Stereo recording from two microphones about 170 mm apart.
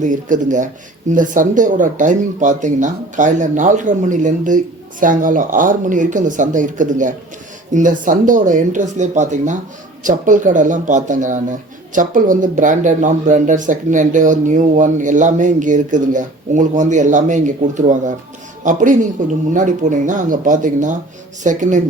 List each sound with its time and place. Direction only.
0.0 s speech: 50° right (ahead or behind)